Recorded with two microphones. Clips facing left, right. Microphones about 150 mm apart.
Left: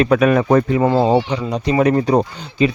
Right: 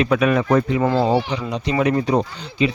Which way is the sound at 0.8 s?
25° left (ahead or behind).